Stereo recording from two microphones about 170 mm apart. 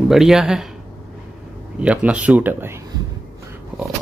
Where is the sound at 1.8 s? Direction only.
5° right (ahead or behind).